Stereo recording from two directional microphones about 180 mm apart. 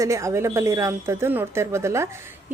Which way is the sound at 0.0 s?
15° right (ahead or behind).